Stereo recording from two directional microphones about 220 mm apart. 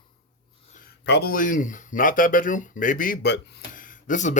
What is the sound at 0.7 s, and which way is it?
Speech, 45° left (ahead or behind).